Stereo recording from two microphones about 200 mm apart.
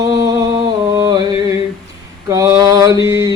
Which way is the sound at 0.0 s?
15° right (ahead or behind).